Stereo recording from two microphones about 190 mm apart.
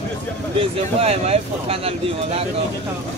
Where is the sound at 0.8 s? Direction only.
35° right (ahead or behind).